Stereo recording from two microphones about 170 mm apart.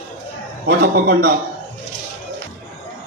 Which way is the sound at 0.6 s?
70° right (ahead or behind).